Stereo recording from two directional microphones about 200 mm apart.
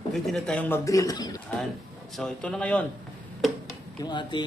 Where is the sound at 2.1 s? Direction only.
5° left (ahead or behind).